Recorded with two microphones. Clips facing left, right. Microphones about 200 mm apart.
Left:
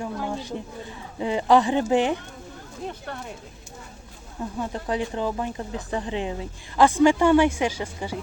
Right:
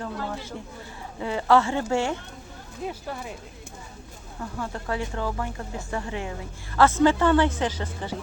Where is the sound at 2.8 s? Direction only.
5° right (ahead or behind).